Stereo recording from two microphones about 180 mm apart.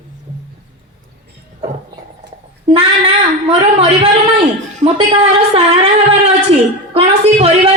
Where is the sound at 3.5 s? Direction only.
35° right (ahead or behind).